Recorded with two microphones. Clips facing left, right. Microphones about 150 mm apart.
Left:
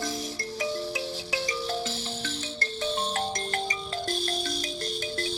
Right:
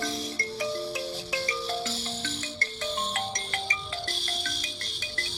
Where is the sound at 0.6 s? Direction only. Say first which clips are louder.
Left 1 dB; 20° left (ahead or behind).